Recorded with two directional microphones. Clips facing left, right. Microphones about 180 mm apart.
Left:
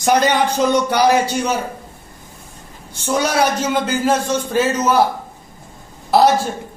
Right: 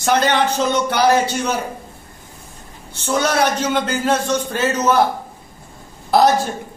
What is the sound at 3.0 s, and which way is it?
A man's voice, 10° left (ahead or behind).